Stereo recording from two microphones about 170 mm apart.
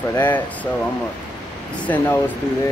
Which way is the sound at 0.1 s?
10° left (ahead or behind).